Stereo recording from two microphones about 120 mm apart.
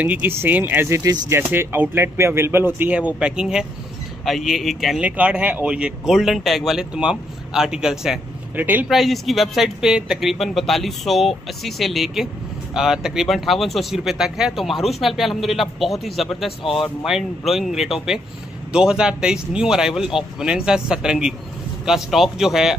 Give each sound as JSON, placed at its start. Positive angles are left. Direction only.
{"t": 0.0, "sound": "speech", "side_deg": -15}
{"t": 8.8, "sound": "speech", "side_deg": 0}